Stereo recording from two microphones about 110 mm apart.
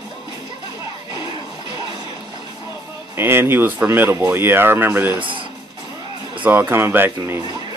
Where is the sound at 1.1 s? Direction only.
45° left (ahead or behind).